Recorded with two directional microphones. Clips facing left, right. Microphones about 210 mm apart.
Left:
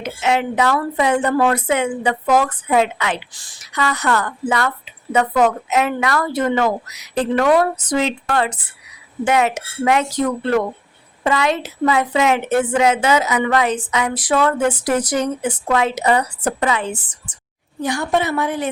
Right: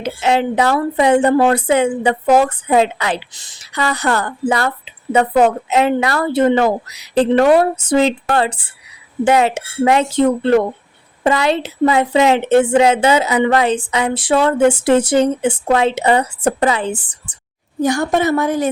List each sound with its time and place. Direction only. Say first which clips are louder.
0.0 s a woman's voice: right 3 dB; 30° right (ahead or behind)
17.7 s a woman's voice: right 4 dB; 45° right (ahead or behind)